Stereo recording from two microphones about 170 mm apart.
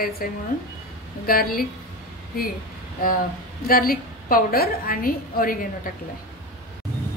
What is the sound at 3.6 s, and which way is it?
A woman's voice, 60° left (ahead or behind).